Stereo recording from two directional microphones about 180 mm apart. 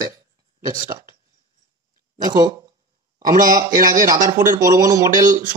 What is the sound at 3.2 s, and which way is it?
Speech, 50° right (ahead or behind).